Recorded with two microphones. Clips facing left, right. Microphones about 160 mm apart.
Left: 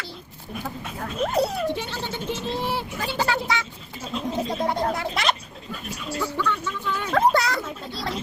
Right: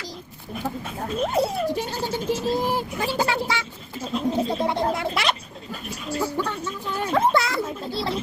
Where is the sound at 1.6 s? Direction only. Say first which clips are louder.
Right 2 dB; 40° right (ahead or behind).